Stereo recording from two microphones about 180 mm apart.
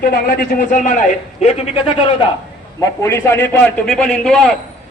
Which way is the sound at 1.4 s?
35° left (ahead or behind).